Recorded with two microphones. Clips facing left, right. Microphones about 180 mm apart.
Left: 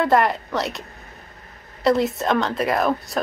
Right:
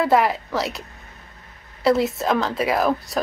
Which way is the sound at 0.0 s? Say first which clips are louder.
Even; centre (ahead or behind).